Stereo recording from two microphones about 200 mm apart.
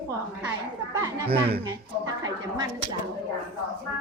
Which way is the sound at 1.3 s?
55° right (ahead or behind).